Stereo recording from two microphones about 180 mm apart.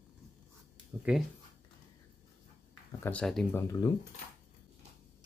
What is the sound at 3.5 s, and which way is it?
Speech, 15° left (ahead or behind).